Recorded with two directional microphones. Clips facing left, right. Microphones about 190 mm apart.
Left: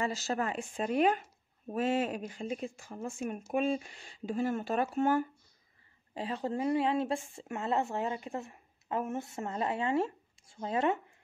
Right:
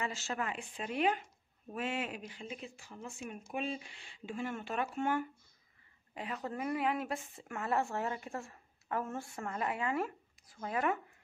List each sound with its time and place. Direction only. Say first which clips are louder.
0.0 s speech: left 5 dB; 40° left (ahead or behind)